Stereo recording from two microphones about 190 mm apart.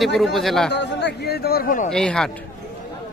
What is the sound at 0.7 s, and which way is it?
Speech, 65° left (ahead or behind).